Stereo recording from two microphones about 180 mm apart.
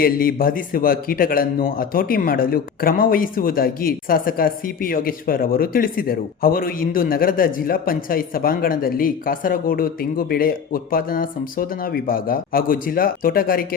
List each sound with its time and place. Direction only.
0.0 s a man's voice: 55° left (ahead or behind)